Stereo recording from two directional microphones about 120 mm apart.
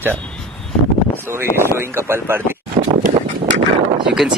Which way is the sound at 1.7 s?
20° right (ahead or behind).